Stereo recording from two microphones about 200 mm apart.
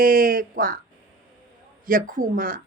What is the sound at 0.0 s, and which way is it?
Speech, 45° right (ahead or behind).